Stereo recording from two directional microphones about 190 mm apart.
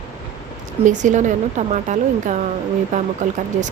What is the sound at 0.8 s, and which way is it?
Speech, 40° right (ahead or behind).